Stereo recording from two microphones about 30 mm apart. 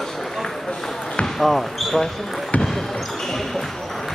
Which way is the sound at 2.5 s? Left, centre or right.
Left.